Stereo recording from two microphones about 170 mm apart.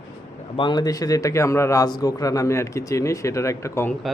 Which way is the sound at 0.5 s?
25° left (ahead or behind).